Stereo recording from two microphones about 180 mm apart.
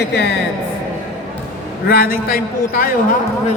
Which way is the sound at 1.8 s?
55° left (ahead or behind).